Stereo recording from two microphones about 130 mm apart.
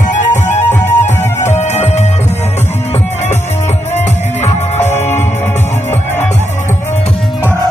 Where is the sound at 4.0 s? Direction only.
60° left (ahead or behind).